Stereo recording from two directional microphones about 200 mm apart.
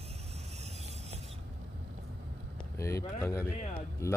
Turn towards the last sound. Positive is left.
turn(degrees=15)  # may be behind; listen again after turning